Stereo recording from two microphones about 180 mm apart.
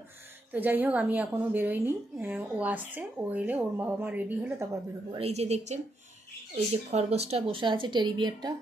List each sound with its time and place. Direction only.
0.5 s a woman's voice: 10° right (ahead or behind)
5.1 s a woman's voice: 35° right (ahead or behind)